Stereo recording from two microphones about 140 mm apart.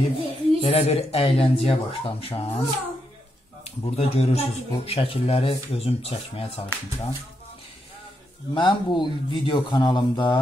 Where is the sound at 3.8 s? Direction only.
45° left (ahead or behind).